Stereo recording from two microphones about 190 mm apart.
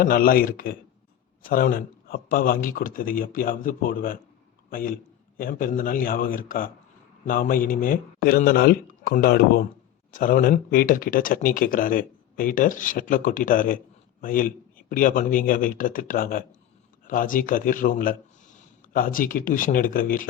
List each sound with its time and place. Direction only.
0.0 s speech: 50° left (ahead or behind)